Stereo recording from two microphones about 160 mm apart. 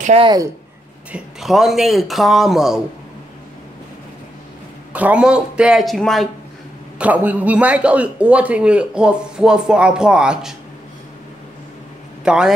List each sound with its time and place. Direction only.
0.2 s a woman's voice: 25° right (ahead or behind)
1.1 s speech: centre (ahead or behind)
4.9 s speech: 10° right (ahead or behind)
7.0 s a man's voice: 10° right (ahead or behind)
12.3 s speech: 5° right (ahead or behind)